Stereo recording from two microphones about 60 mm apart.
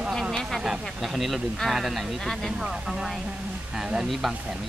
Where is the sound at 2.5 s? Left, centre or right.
Centre.